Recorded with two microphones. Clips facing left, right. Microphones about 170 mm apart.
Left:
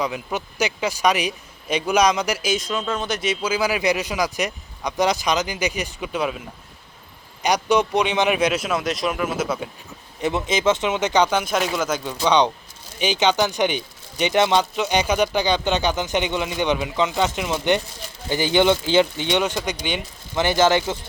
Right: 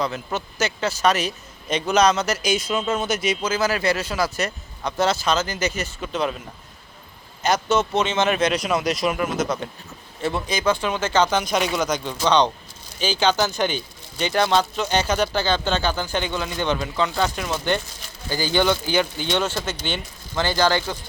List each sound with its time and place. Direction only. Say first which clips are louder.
0.0 s speech: even; 10° left (ahead or behind)
3.4 s speech: left 3 dB; 10° left (ahead or behind)
7.4 s speech: left 1 dB; 15° left (ahead or behind)
10.2 s speech: left 2 dB; 20° left (ahead or behind)